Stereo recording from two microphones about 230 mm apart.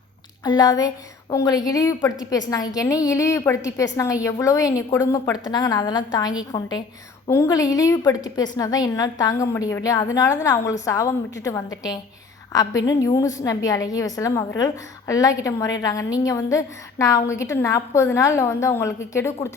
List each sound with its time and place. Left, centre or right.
0.4 s a woman's voice: centre